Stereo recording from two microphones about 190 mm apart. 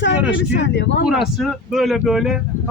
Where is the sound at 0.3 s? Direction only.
70° left (ahead or behind).